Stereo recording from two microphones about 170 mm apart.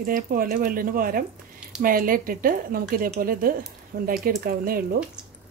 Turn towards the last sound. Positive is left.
turn(degrees=-60)  # may be behind; listen again after turning